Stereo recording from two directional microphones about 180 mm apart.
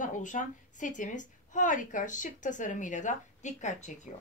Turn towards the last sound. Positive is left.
turn(degrees=40)  # may be behind; listen again after turning